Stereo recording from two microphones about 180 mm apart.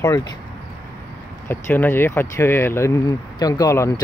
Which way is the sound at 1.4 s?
10° left (ahead or behind).